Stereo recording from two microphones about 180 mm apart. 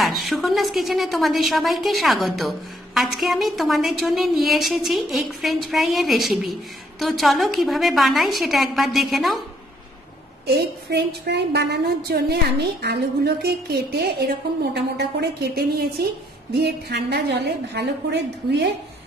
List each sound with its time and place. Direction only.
0.0 s a woman's voice: centre (ahead or behind)
10.4 s a woman's voice: 65° right (ahead or behind)